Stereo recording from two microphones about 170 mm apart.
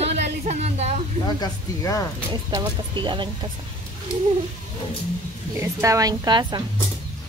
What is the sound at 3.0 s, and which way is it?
Speech, 30° right (ahead or behind).